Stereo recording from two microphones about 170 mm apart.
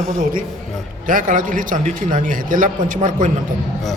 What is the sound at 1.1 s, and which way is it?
A man's voice, 50° right (ahead or behind).